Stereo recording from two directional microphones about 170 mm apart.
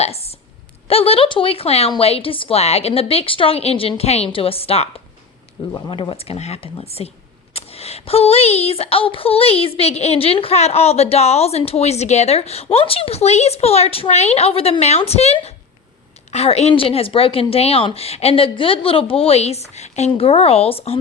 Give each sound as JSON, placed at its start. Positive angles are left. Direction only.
{"t": 0.0, "sound": "a woman's voice", "side_deg": 35}